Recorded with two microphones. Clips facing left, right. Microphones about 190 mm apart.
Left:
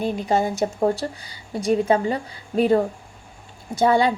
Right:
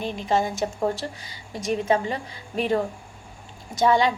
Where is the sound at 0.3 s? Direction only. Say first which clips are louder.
Even; 35° left (ahead or behind).